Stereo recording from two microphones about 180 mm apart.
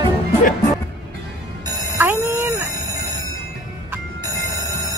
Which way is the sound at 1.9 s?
15° right (ahead or behind).